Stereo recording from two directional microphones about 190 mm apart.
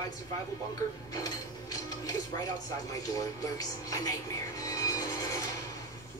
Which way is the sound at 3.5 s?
20° left (ahead or behind).